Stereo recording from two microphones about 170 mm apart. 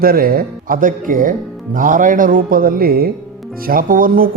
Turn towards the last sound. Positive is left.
turn(degrees=-55)  # may be behind; listen again after turning